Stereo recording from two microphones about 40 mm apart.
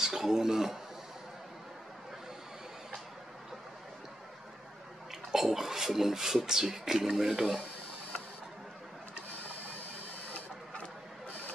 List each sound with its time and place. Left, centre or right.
0.0 s speech: centre
5.3 s speech: centre
10.3 s printer: left